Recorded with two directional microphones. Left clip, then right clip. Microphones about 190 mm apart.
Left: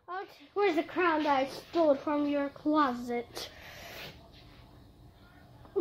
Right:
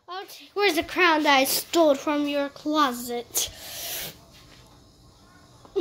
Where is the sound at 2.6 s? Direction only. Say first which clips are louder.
Right 4 dB; 5° right (ahead or behind).